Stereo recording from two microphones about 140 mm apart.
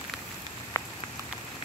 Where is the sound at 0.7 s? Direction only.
20° left (ahead or behind).